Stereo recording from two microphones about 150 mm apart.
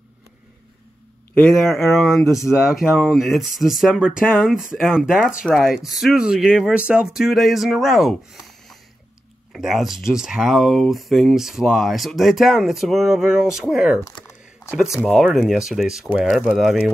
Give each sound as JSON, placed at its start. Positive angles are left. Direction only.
{"t": 1.3, "sound": "speech", "side_deg": 5}
{"t": 2.2, "sound": "speech", "side_deg": 20}
{"t": 2.7, "sound": "speech", "side_deg": 0}